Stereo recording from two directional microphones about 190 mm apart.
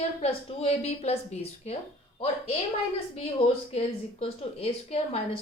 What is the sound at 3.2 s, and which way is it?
A woman's voice, 30° left (ahead or behind).